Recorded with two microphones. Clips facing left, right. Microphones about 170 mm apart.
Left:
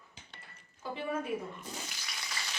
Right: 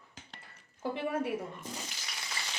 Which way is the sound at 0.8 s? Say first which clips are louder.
Right 3 dB; 65° right (ahead or behind).